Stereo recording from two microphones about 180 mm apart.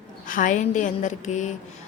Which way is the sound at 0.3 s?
45° left (ahead or behind).